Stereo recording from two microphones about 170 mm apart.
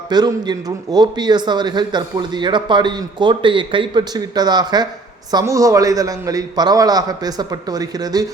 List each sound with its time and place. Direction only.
0.1 s a man's voice: 25° right (ahead or behind)